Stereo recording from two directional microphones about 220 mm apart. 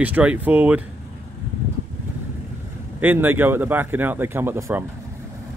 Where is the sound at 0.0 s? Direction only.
5° right (ahead or behind).